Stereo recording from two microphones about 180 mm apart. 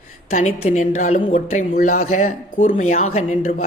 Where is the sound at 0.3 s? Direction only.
40° left (ahead or behind).